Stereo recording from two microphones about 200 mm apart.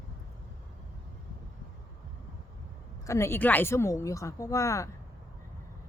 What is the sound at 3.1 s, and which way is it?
Speech, 15° left (ahead or behind).